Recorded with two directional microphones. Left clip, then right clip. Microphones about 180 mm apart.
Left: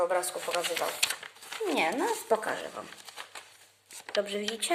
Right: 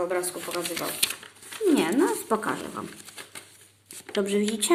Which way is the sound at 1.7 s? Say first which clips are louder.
Even; 20° left (ahead or behind).